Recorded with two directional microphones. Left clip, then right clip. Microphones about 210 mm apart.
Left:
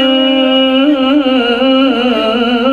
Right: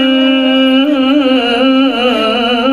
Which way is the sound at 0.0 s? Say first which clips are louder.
Left 1 dB; 20° right (ahead or behind).